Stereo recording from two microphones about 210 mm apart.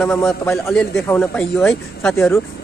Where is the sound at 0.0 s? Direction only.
5° left (ahead or behind).